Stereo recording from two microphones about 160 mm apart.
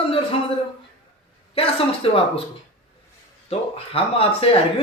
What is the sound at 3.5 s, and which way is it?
A man's voice, 35° left (ahead or behind).